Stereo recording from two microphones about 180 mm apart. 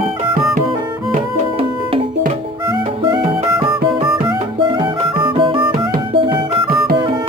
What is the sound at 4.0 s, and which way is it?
Music, 30° right (ahead or behind).